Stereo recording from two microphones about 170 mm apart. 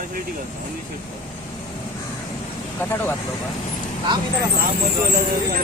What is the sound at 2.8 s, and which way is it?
Speech, 10° left (ahead or behind).